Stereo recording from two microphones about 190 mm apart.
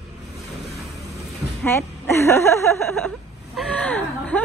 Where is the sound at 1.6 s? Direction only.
15° left (ahead or behind).